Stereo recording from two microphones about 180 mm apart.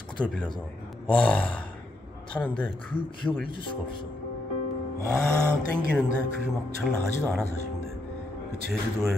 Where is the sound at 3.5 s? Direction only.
30° left (ahead or behind).